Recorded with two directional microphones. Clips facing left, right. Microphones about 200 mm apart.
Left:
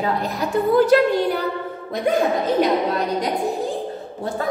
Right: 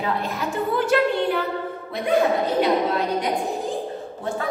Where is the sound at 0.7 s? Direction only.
40° left (ahead or behind).